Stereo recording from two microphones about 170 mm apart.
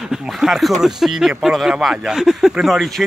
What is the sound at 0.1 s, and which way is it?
Speech, centre (ahead or behind).